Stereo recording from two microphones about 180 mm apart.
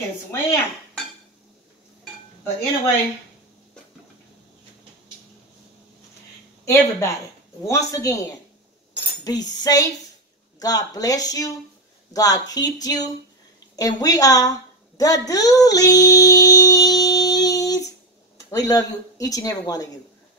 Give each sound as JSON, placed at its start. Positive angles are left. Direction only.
{"t": 6.6, "sound": "speech", "side_deg": 15}
{"t": 8.9, "sound": "cutlery", "side_deg": 20}
{"t": 10.6, "sound": "a woman's voice", "side_deg": 20}
{"t": 15.2, "sound": "child singing", "side_deg": 20}
{"t": 18.5, "sound": "speech", "side_deg": 20}